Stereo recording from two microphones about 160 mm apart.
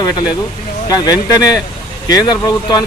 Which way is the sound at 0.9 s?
25° left (ahead or behind).